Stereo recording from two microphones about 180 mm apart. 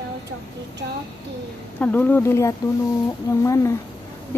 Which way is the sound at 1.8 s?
10° left (ahead or behind).